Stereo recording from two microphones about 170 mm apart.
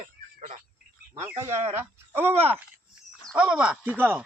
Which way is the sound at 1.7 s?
15° right (ahead or behind).